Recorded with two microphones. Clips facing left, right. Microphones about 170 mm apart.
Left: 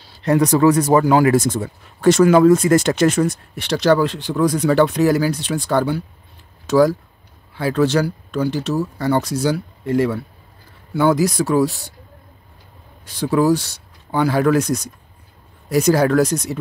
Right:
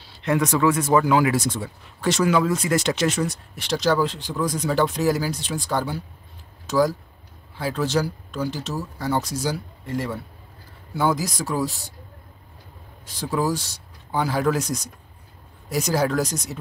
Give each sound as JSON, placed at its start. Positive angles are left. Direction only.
{"t": 0.2, "sound": "speech", "side_deg": 35}
{"t": 13.0, "sound": "speech", "side_deg": 65}